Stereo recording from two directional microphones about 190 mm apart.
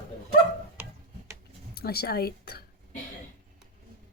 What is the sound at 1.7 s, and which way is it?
Speech, 55° left (ahead or behind).